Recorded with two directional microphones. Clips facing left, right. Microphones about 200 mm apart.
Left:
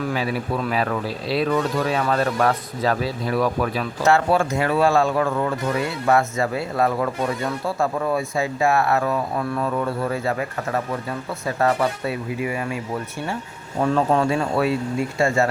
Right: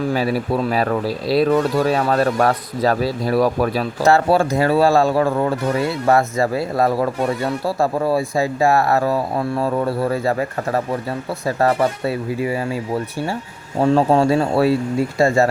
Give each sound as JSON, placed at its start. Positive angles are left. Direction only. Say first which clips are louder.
{"t": 0.1, "sound": "speech", "louder": "right 5 dB", "side_deg": -35}
{"t": 13.8, "sound": "speech", "louder": "right 5 dB", "side_deg": -30}